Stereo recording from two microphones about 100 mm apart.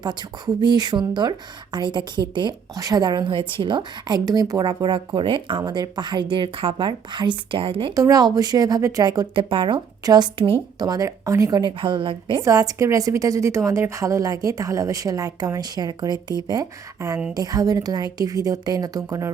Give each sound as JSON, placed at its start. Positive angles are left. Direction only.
{"t": 0.0, "sound": "speech", "side_deg": -45}
{"t": 2.7, "sound": "speech", "side_deg": -40}
{"t": 7.9, "sound": "a woman's voice", "side_deg": -35}
{"t": 9.3, "sound": "speech", "side_deg": -60}
{"t": 10.0, "sound": "a woman's voice", "side_deg": -40}
{"t": 10.3, "sound": "speech", "side_deg": -65}
{"t": 10.8, "sound": "a woman's voice", "side_deg": -40}
{"t": 11.6, "sound": "speech", "side_deg": -55}
{"t": 12.4, "sound": "a woman's voice", "side_deg": -35}
{"t": 19.0, "sound": "speech", "side_deg": -30}